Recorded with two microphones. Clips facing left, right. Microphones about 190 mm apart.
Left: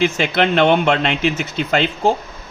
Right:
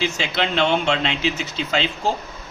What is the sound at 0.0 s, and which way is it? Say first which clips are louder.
Speech: left 7 dB; 55° left (ahead or behind).